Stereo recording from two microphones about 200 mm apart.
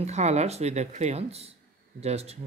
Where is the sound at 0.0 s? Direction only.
35° right (ahead or behind).